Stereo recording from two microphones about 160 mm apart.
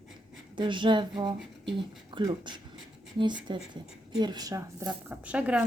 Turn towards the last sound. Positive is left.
turn(degrees=-10)  # may be behind; listen again after turning